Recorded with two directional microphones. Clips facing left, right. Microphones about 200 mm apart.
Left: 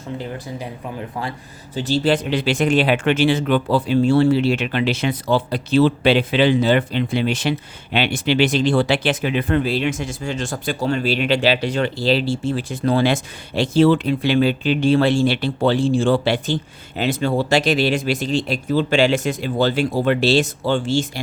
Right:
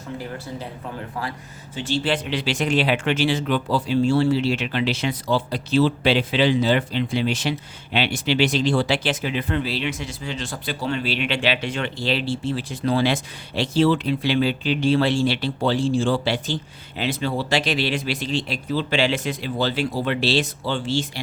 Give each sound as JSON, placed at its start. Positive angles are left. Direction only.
{"t": 1.7, "sound": "speech", "side_deg": 40}